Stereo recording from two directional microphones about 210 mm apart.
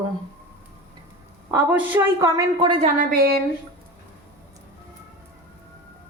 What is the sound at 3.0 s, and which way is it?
Speech, 45° right (ahead or behind).